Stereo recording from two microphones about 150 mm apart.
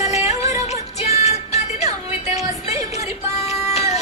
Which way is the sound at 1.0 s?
45° left (ahead or behind).